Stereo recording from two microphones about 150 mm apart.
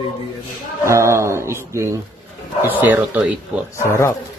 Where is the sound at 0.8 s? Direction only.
20° right (ahead or behind).